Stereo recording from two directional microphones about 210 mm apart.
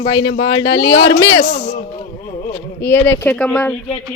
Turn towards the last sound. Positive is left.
turn(degrees=5)  # may be behind; listen again after turning